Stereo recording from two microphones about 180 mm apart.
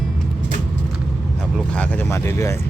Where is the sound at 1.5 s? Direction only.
5° left (ahead or behind).